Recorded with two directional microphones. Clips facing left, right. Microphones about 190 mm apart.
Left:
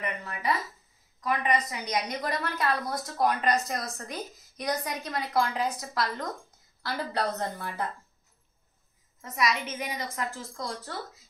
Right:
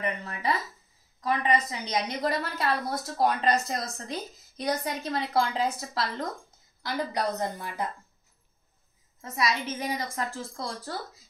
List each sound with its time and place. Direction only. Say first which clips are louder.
1.2 s a woman's voice: right 2 dB; 30° right (ahead or behind)
6.8 s a woman's voice: right 1 dB; 15° right (ahead or behind)
9.2 s a woman's voice: even; 30° right (ahead or behind)